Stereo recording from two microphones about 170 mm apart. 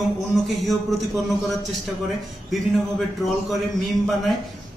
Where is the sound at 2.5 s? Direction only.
Centre (ahead or behind).